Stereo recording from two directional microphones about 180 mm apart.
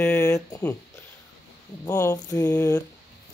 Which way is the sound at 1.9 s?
15° left (ahead or behind).